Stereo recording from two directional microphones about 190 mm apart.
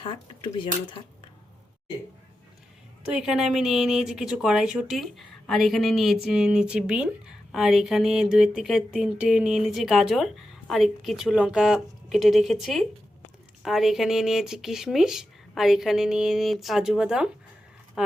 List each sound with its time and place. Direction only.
0.0 s speech: 25° left (ahead or behind)
3.1 s a woman's voice: 5° right (ahead or behind)